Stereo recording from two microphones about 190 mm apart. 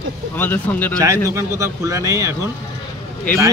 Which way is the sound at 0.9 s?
15° right (ahead or behind).